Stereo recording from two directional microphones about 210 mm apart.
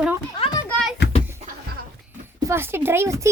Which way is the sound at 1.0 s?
50° left (ahead or behind).